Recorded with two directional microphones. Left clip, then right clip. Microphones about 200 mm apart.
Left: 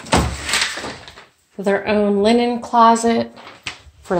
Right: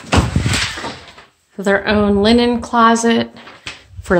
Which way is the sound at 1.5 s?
5° right (ahead or behind).